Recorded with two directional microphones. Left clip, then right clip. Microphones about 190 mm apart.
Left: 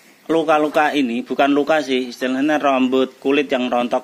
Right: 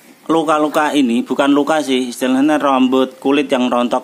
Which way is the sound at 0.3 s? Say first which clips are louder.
Right 2 dB; 5° right (ahead or behind).